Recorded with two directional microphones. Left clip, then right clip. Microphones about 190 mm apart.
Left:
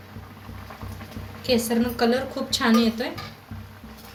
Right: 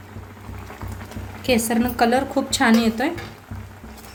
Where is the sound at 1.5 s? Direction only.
50° right (ahead or behind).